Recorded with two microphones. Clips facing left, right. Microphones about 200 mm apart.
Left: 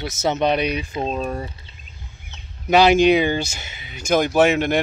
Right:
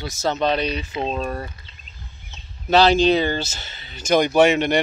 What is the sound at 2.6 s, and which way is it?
Speech, 15° left (ahead or behind).